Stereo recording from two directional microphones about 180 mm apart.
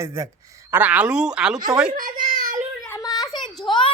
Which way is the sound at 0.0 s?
15° right (ahead or behind).